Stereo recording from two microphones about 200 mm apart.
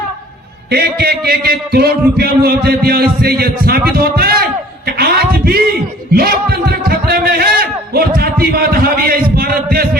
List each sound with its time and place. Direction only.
0.7 s a man's voice: 50° right (ahead or behind)